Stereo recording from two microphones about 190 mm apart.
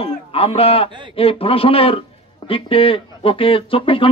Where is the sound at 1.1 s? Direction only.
30° left (ahead or behind).